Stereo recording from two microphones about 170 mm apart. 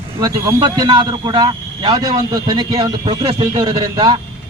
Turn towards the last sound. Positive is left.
turn(degrees=-30)  # may be behind; listen again after turning